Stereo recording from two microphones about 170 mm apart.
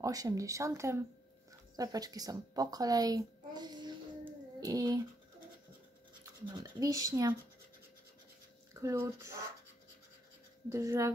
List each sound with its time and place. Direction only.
0.0 s a woman's voice: 20° right (ahead or behind)
6.4 s speech: 20° right (ahead or behind)
8.8 s speech: 15° right (ahead or behind)
10.7 s speech: 20° right (ahead or behind)